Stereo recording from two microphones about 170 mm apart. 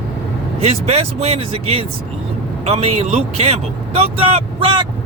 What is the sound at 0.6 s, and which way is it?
Speech, 40° right (ahead or behind).